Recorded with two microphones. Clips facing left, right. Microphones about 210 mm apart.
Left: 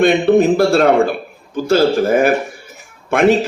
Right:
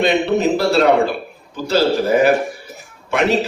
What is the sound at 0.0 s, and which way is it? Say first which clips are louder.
A man's voice: left 5 dB; 50° left (ahead or behind).